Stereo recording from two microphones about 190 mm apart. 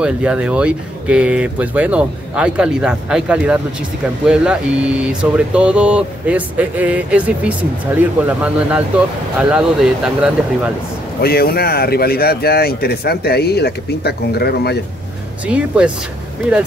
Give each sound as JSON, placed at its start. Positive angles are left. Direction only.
{"t": 0.0, "sound": "speech", "side_deg": -5}
{"t": 11.1, "sound": "speech", "side_deg": 55}
{"t": 15.4, "sound": "speech", "side_deg": -5}